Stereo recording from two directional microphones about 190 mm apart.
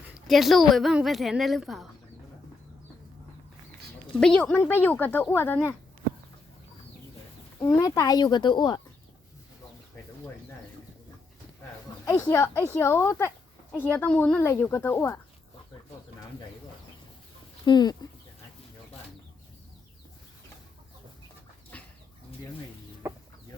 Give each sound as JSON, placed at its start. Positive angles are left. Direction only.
{"t": 0.3, "sound": "speech", "side_deg": 0}
{"t": 4.2, "sound": "speech", "side_deg": 5}
{"t": 7.6, "sound": "speech", "side_deg": 15}
{"t": 12.0, "sound": "speech", "side_deg": 15}
{"t": 17.7, "sound": "speech", "side_deg": 20}
{"t": 21.7, "sound": "chicken", "side_deg": 5}
{"t": 23.0, "sound": "chicken", "side_deg": -15}